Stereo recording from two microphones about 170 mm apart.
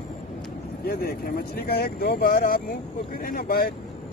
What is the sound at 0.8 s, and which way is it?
Speech, 65° left (ahead or behind).